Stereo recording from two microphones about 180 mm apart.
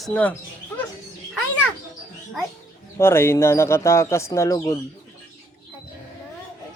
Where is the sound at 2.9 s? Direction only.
15° left (ahead or behind).